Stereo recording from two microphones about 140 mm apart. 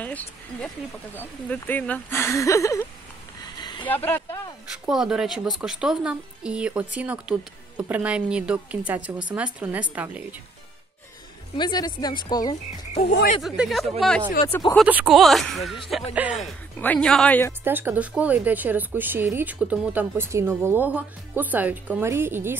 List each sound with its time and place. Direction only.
0.0 s speech: 10° left (ahead or behind)
3.5 s a sound: 30° left (ahead or behind)
3.8 s speech: 15° left (ahead or behind)
4.8 s a woman's voice: 5° right (ahead or behind)
11.5 s speech: 30° left (ahead or behind)
13.4 s speech: centre (ahead or behind)
14.9 s a woman's voice: 10° right (ahead or behind)
15.1 s speech: centre (ahead or behind)
17.6 s a woman's voice: 15° right (ahead or behind)